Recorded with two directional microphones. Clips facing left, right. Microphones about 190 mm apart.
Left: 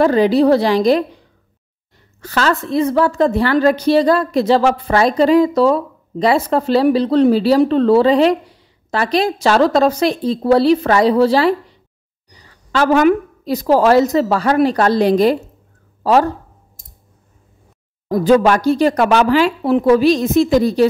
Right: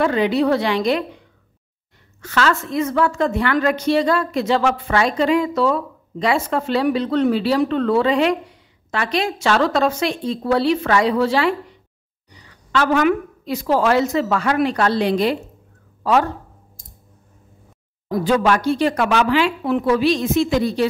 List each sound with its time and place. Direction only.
0.0 s a woman's voice: 35° left (ahead or behind)
2.2 s a woman's voice: 35° left (ahead or behind)
18.0 s a woman's voice: 40° left (ahead or behind)